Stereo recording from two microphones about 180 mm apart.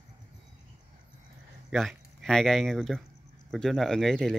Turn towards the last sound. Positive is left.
turn(degrees=0)  # may be behind; listen again after turning